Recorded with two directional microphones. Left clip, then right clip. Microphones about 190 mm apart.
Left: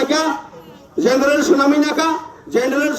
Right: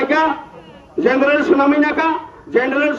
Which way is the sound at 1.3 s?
65° left (ahead or behind).